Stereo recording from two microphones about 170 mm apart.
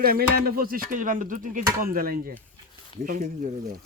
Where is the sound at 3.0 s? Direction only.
45° right (ahead or behind).